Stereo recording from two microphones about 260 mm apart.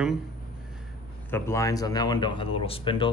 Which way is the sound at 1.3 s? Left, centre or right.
Centre.